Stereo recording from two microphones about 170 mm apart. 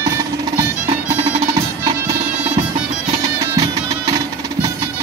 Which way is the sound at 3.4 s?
20° right (ahead or behind).